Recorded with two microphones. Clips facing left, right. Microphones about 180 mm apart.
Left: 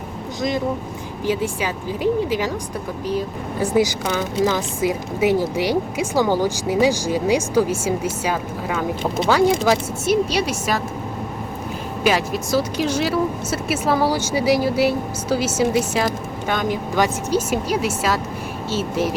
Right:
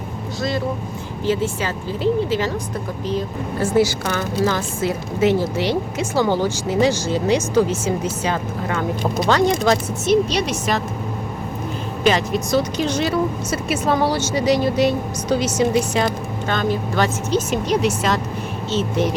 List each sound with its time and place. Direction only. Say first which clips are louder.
1.2 s speech: right 1 dB; 10° left (ahead or behind)
12.0 s speech: right 2 dB; 5° left (ahead or behind)